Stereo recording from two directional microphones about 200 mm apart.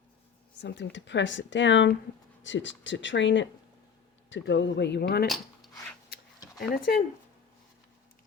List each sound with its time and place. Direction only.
0.6 s speech: 60° left (ahead or behind)
6.1 s a sound: 50° left (ahead or behind)
6.6 s speech: 50° left (ahead or behind)